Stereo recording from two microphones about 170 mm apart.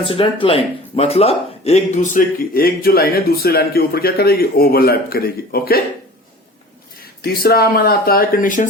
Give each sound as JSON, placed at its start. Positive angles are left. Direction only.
{"t": 0.0, "sound": "speech", "side_deg": 30}
{"t": 7.2, "sound": "speech", "side_deg": 65}